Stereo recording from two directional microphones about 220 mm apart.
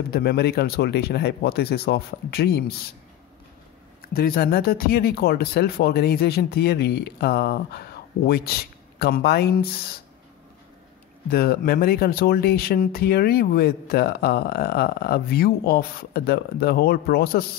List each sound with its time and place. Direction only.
0.1 s speech: 45° left (ahead or behind)
4.0 s speech: 40° left (ahead or behind)
11.2 s speech: 45° left (ahead or behind)